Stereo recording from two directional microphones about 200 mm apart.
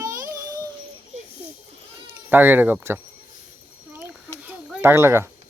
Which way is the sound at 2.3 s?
10° right (ahead or behind).